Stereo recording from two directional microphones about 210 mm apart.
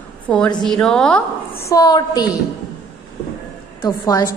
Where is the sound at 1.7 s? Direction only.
20° left (ahead or behind).